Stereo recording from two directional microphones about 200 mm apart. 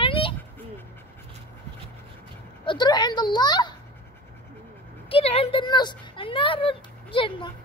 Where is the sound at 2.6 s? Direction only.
25° left (ahead or behind).